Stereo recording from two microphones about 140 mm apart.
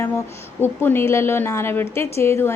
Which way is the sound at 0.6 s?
15° left (ahead or behind).